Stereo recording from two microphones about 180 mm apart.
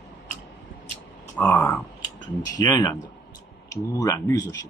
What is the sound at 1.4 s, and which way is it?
Speech, 15° left (ahead or behind).